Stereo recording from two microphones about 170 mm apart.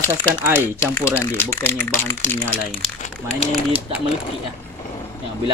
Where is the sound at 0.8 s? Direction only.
15° left (ahead or behind).